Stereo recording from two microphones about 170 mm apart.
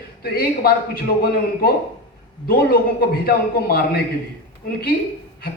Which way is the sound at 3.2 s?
60° left (ahead or behind).